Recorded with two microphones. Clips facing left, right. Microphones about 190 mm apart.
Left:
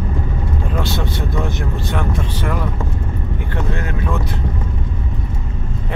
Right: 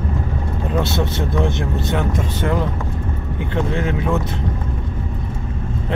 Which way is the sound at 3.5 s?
20° right (ahead or behind).